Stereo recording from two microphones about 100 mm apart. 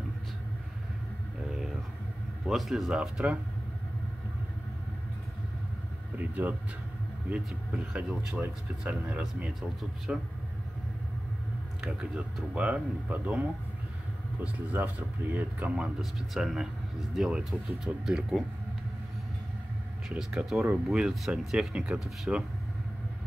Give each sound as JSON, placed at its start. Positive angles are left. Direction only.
{"t": 2.4, "sound": "speech", "side_deg": 0}
{"t": 6.1, "sound": "a sound", "side_deg": -15}
{"t": 7.2, "sound": "speech", "side_deg": -10}
{"t": 11.8, "sound": "speech", "side_deg": -5}
{"t": 20.1, "sound": "speech", "side_deg": -5}